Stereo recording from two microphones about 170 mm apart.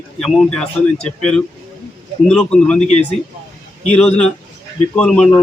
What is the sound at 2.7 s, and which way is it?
Speech, 40° left (ahead or behind).